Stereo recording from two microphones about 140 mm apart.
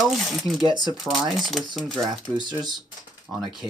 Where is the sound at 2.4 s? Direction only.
30° right (ahead or behind).